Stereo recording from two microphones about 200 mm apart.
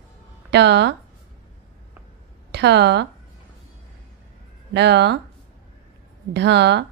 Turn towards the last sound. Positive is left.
turn(degrees=-60)  # may be behind; listen again after turning